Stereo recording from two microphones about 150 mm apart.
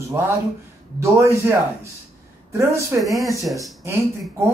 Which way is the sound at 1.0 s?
20° right (ahead or behind).